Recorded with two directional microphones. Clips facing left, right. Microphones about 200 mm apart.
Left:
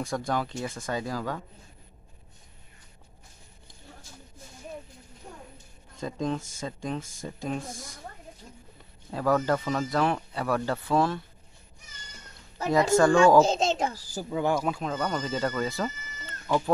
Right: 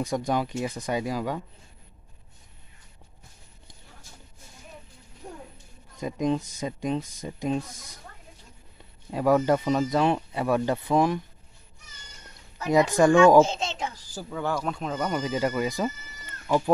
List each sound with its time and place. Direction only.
0.0 s speech: 20° right (ahead or behind)
5.9 s speech: 15° right (ahead or behind)
9.1 s speech: 15° right (ahead or behind)
12.9 s speech: 15° right (ahead or behind)
13.4 s a child's voice: 40° left (ahead or behind)
13.9 s speech: 15° left (ahead or behind)
14.7 s speech: centre (ahead or behind)
15.0 s speech: 10° right (ahead or behind)